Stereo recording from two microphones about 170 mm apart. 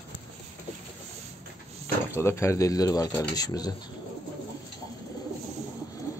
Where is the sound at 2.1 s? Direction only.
15° left (ahead or behind).